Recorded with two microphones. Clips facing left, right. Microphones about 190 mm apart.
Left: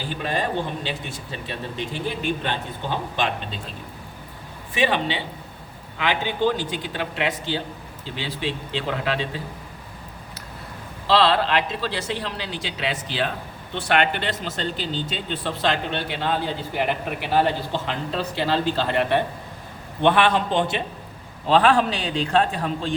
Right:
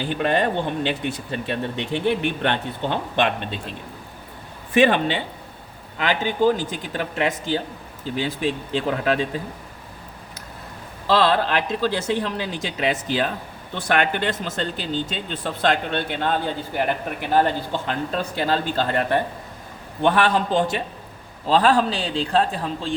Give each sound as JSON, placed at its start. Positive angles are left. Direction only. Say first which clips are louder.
{"t": 0.0, "sound": "speech", "louder": "right 5 dB", "side_deg": -60}
{"t": 4.7, "sound": "speech", "louder": "right 5 dB", "side_deg": -50}
{"t": 11.0, "sound": "a man's voice", "louder": "even", "side_deg": -45}